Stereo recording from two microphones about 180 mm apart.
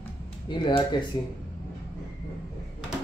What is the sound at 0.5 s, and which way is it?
Speech, 25° left (ahead or behind).